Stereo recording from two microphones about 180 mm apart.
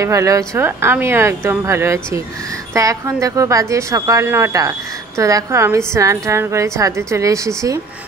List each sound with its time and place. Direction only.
0.0 s speech: 15° right (ahead or behind)